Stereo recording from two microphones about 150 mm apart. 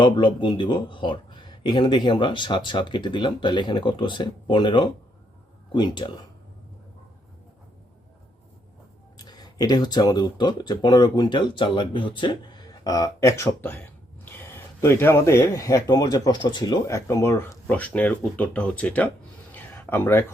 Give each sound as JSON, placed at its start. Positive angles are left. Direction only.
{"t": 0.0, "sound": "speech", "side_deg": 30}
{"t": 9.1, "sound": "speech", "side_deg": 25}